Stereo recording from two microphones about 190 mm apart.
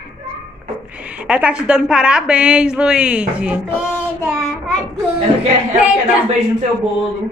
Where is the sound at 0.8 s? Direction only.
5° right (ahead or behind).